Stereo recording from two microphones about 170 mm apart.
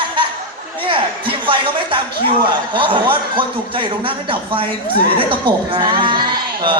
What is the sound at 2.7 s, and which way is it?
Speech, 30° right (ahead or behind).